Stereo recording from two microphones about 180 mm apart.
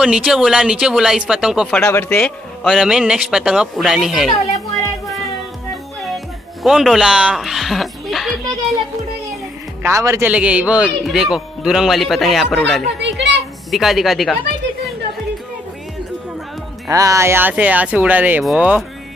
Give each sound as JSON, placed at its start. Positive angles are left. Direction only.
{"t": 0.0, "sound": "speech", "side_deg": -5}
{"t": 1.9, "sound": "speech", "side_deg": 15}
{"t": 6.0, "sound": "speech", "side_deg": 0}
{"t": 9.8, "sound": "speech", "side_deg": -15}
{"t": 10.3, "sound": "speech", "side_deg": -5}
{"t": 13.0, "sound": "a woman's voice", "side_deg": -80}
{"t": 13.7, "sound": "speech", "side_deg": 0}
{"t": 16.9, "sound": "speech", "side_deg": -20}